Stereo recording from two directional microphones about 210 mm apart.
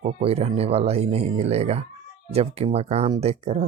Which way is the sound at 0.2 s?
30° right (ahead or behind).